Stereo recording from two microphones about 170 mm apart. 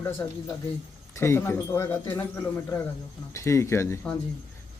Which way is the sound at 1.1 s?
15° left (ahead or behind).